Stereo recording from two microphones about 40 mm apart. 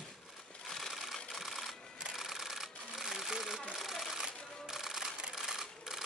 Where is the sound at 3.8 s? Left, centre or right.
Centre.